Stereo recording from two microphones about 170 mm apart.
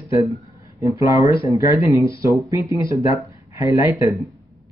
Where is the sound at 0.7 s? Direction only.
20° right (ahead or behind).